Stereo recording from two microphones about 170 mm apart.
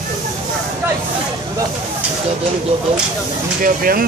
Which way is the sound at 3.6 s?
60° right (ahead or behind).